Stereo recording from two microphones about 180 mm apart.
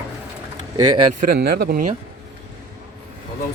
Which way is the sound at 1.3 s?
60° right (ahead or behind).